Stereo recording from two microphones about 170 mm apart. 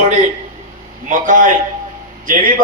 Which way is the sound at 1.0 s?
50° right (ahead or behind).